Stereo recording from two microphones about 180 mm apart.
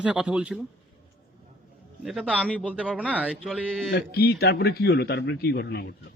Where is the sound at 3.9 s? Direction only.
60° left (ahead or behind).